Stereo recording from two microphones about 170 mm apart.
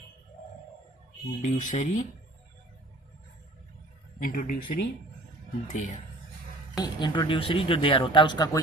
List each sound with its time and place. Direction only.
1.4 s speech: 50° left (ahead or behind)
4.2 s speech: 55° left (ahead or behind)
6.7 s speech: 25° left (ahead or behind)